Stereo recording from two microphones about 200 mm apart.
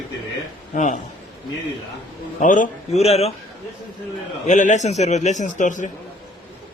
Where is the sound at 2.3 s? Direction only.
40° left (ahead or behind).